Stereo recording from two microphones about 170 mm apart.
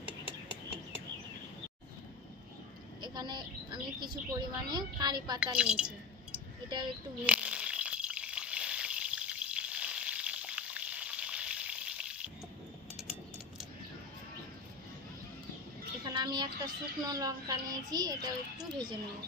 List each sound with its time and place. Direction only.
3.0 s a woman's voice: 25° right (ahead or behind)
5.6 s speech: 5° right (ahead or behind)
6.7 s a woman's voice: 25° right (ahead or behind)
7.2 s frying: 5° right (ahead or behind)
16.1 s a woman's voice: 25° right (ahead or behind)